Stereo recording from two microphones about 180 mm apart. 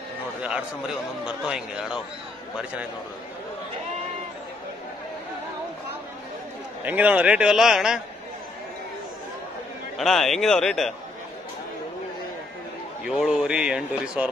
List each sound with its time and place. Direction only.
0.4 s a man's voice: 5° right (ahead or behind)
6.8 s a man's voice: 10° right (ahead or behind)
9.9 s a man's voice: centre (ahead or behind)
13.2 s a man's voice: 5° right (ahead or behind)